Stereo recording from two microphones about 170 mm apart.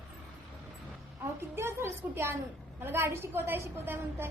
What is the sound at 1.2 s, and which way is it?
A woman's voice, 15° right (ahead or behind).